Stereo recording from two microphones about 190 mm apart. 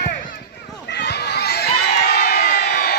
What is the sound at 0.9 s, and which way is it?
Crowd, 60° left (ahead or behind).